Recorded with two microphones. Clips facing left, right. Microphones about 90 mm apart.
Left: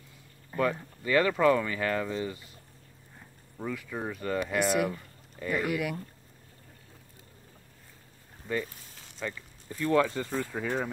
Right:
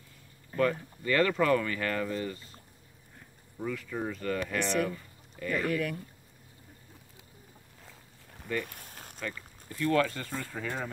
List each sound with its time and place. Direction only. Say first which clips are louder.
0.5 s speech: right 1 dB; 10° left (ahead or behind)
3.5 s speech: right 1 dB; 15° left (ahead or behind)
8.6 s a sound: right 4 dB; 55° right (ahead or behind)
9.2 s speech: left 2 dB; 20° left (ahead or behind)